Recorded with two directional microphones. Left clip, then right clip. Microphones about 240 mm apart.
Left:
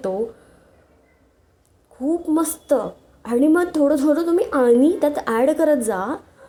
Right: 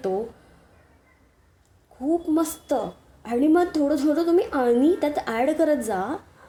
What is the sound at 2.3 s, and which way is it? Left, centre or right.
A woman's voice, left.